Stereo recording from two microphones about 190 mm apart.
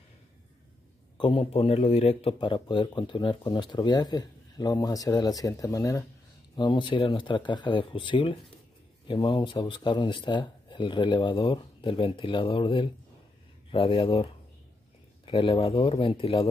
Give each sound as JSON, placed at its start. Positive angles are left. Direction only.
{"t": 1.1, "sound": "a man's voice", "side_deg": 25}
{"t": 15.2, "sound": "a man's voice", "side_deg": 30}